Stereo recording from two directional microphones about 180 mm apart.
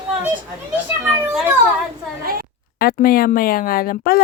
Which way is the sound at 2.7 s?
55° left (ahead or behind).